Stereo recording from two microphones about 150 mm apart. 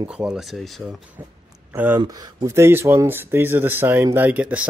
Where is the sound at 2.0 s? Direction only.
25° right (ahead or behind); by 4.6 s 10° right (ahead or behind).